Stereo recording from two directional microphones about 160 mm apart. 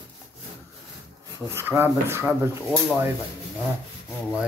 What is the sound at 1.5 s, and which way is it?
Speech, 15° right (ahead or behind).